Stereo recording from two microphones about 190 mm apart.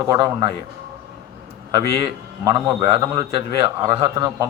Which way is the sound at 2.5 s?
25° right (ahead or behind).